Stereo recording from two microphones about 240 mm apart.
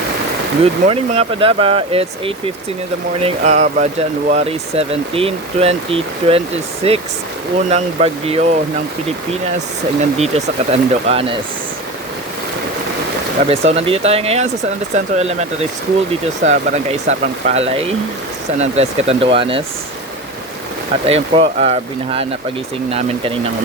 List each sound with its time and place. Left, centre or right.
0.6 s speech: right
10.0 s speech: right
13.5 s speech: right
21.1 s speech: right